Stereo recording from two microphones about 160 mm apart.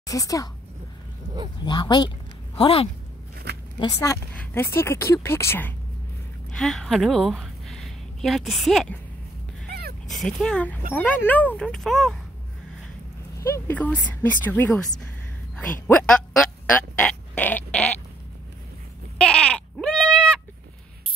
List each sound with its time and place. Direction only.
0.0 s speech: 20° left (ahead or behind)
1.6 s speech: 30° left (ahead or behind)
3.5 s a sound: 90° right
3.8 s speech: 20° left (ahead or behind)
6.5 s a woman's voice: centre (ahead or behind)
9.7 s dog: 75° right (ahead or behind)
10.0 s speech: centre (ahead or behind)
13.4 s speech: 15° left (ahead or behind)
16.7 s pig: 10° left (ahead or behind)
19.1 s sheep: 5° left (ahead or behind)